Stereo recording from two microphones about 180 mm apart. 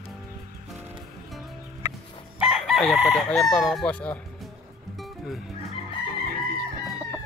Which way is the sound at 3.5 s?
5° left (ahead or behind).